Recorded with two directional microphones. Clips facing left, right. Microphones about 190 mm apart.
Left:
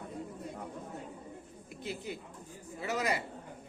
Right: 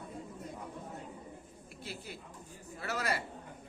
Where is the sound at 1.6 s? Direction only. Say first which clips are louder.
Left 6 dB; 20° left (ahead or behind).